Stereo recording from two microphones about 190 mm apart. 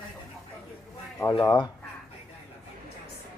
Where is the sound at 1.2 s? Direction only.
20° left (ahead or behind).